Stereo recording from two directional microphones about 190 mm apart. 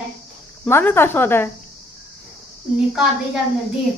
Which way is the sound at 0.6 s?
10° left (ahead or behind).